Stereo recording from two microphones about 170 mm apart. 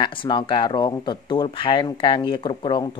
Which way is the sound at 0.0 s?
30° left (ahead or behind).